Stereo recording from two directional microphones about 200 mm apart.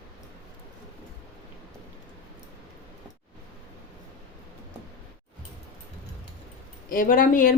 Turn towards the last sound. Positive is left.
turn(degrees=40)  # may be behind; listen again after turning